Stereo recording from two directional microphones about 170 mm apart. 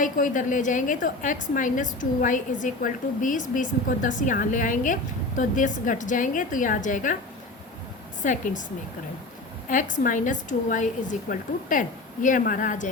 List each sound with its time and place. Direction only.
0.0 s a woman's voice: 50° left (ahead or behind)
8.2 s a woman's voice: 50° left (ahead or behind)
9.6 s a woman's voice: 50° left (ahead or behind)